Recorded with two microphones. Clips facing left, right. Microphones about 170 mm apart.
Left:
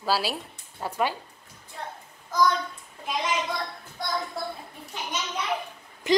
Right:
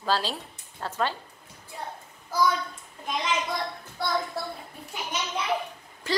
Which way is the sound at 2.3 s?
5° right (ahead or behind).